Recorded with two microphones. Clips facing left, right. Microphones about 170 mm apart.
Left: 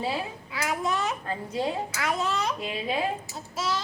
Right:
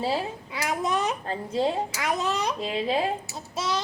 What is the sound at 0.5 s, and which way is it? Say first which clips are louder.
A child's voice: right 1 dB; 20° right (ahead or behind).